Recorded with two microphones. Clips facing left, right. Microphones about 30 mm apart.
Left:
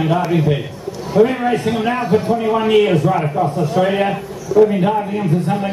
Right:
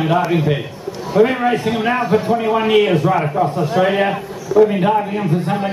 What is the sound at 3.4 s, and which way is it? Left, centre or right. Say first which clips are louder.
A man's voice: even; right.